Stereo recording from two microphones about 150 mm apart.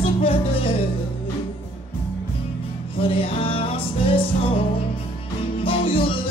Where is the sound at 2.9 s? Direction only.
35° left (ahead or behind).